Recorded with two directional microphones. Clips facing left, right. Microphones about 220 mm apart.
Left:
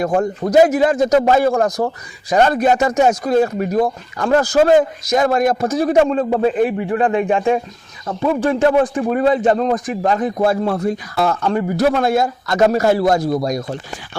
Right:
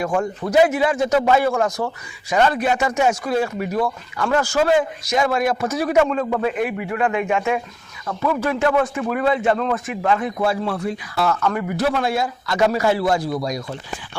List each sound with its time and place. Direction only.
0.0 s a man's voice: 40° left (ahead or behind)
5.9 s a man's voice: 35° left (ahead or behind)